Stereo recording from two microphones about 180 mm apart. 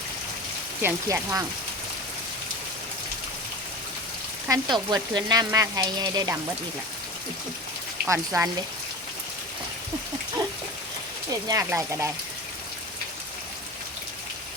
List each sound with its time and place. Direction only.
0.8 s speech: 15° right (ahead or behind)
4.4 s frying: 20° right (ahead or behind)
8.0 s speech: 15° right (ahead or behind)
11.4 s speech: 15° right (ahead or behind)